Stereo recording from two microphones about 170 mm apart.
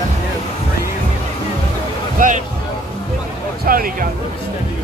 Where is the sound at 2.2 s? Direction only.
55° right (ahead or behind).